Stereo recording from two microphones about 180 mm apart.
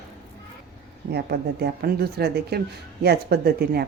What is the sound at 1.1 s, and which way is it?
Speech, 65° right (ahead or behind).